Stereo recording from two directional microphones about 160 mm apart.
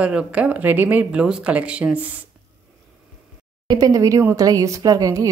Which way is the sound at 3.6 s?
25° right (ahead or behind).